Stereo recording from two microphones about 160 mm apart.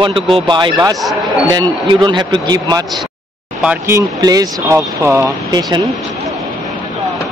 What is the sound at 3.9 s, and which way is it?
Speech, 25° right (ahead or behind).